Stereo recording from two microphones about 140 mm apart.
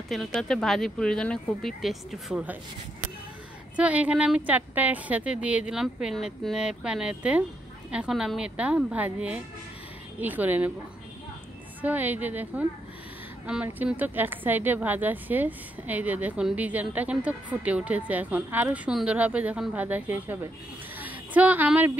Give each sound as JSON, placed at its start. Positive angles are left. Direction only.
{"t": 0.1, "sound": "speech", "side_deg": 0}
{"t": 3.7, "sound": "a woman's voice", "side_deg": -10}
{"t": 11.8, "sound": "a woman's voice", "side_deg": -10}
{"t": 21.0, "sound": "a sound", "side_deg": -10}